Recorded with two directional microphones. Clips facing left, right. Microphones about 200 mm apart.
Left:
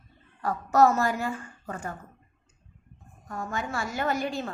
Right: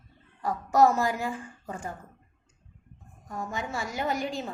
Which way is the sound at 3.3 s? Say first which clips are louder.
Left 1 dB; 15° right (ahead or behind).